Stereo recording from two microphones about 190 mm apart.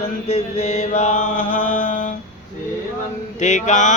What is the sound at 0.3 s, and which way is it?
Mantra, 30° left (ahead or behind).